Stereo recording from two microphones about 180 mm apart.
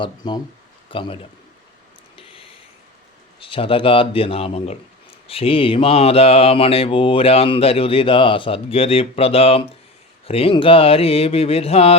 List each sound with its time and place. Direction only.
0.0 s a man's voice: 25° left (ahead or behind)
2.1 s a sound: 30° left (ahead or behind)
3.4 s mantra: 30° left (ahead or behind)